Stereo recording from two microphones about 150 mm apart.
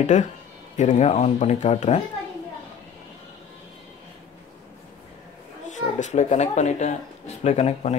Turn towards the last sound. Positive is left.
turn(degrees=45)  # may be behind; listen again after turning